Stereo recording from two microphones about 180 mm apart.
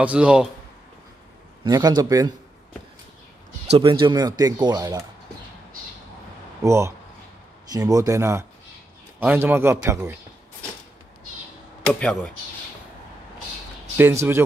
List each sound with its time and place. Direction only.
0.0 s a man's voice: 5° right (ahead or behind)
1.6 s speech: 20° right (ahead or behind)
3.7 s speech: 30° right (ahead or behind)
6.6 s a man's voice: 15° right (ahead or behind)
11.9 s speech: 5° left (ahead or behind)
13.9 s a man's voice: 10° right (ahead or behind)